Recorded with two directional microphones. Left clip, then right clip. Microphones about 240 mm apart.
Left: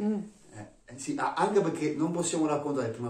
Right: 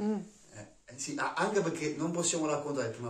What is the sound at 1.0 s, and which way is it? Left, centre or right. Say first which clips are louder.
Speech: left 4 dB; centre.